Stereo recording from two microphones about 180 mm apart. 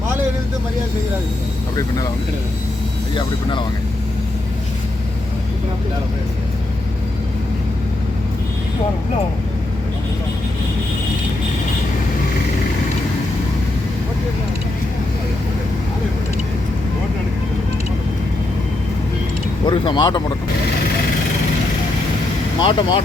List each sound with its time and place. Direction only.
19.6 s speech: 25° left (ahead or behind)
22.6 s speech: 25° left (ahead or behind)